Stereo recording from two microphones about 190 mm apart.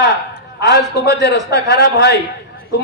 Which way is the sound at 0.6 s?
60° left (ahead or behind).